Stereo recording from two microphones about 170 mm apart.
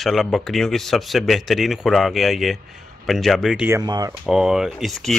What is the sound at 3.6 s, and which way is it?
Speech, 20° right (ahead or behind).